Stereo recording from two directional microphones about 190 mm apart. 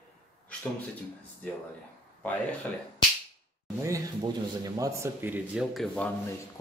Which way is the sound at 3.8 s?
15° right (ahead or behind).